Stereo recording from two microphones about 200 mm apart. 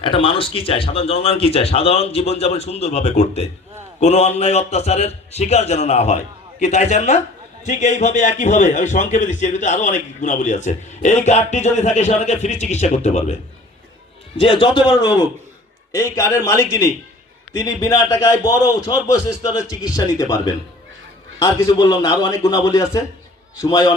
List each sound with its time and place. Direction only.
0.0 s a man's voice: 25° left (ahead or behind)
14.3 s a man's voice: 25° left (ahead or behind)